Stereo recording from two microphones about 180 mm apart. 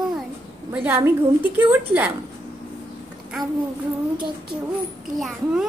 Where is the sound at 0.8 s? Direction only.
10° right (ahead or behind).